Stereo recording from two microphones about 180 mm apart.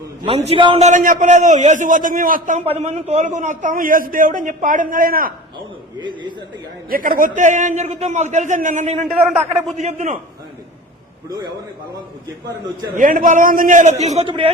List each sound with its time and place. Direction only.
0.3 s a man's voice: 35° right (ahead or behind); by 2.6 s 50° right (ahead or behind)
2.7 s a man's voice: 35° right (ahead or behind); by 5.3 s 55° right (ahead or behind)
6.0 s speech: 25° right (ahead or behind)
6.9 s a man's voice: 50° right (ahead or behind)
9.1 s a man's voice: 10° right (ahead or behind)
9.6 s a man's voice: 40° right (ahead or behind)
11.3 s speech: 25° right (ahead or behind)
13.0 s a man's voice: 45° right (ahead or behind); by 14.5 s 30° right (ahead or behind)